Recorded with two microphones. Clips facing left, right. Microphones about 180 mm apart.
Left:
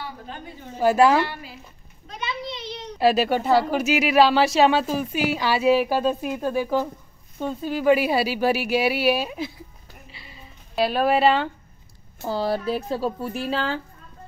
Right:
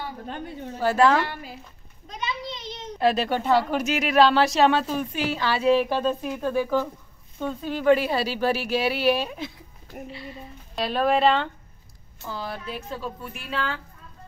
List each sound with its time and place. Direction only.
0.7 s speech: 10° left (ahead or behind)
3.0 s speech: 10° left (ahead or behind)
12.2 s speech: 35° left (ahead or behind)